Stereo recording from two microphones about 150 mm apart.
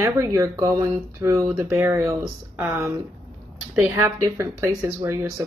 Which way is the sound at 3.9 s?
20° right (ahead or behind).